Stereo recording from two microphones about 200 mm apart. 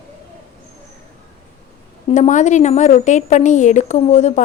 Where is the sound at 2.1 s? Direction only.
35° left (ahead or behind).